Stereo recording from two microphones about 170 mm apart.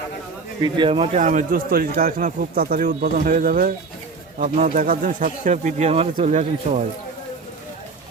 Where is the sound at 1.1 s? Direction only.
45° right (ahead or behind).